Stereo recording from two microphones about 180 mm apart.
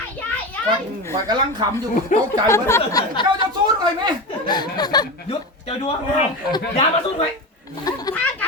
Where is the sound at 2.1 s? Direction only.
45° left (ahead or behind).